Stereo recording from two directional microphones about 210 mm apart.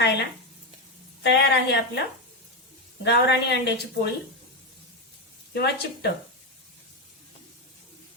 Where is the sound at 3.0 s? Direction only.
55° left (ahead or behind).